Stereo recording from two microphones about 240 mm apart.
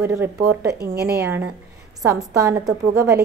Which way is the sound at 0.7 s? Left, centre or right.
Right.